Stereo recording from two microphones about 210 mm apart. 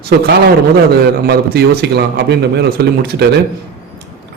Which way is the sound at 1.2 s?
50° right (ahead or behind).